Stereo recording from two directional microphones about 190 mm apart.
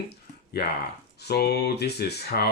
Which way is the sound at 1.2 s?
60° left (ahead or behind).